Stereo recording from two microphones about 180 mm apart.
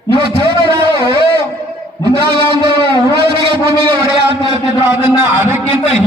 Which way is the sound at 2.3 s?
25° right (ahead or behind).